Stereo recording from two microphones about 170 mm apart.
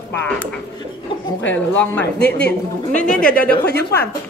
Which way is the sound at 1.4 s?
10° left (ahead or behind).